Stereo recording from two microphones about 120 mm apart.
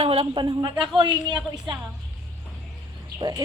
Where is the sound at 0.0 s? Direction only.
50° right (ahead or behind).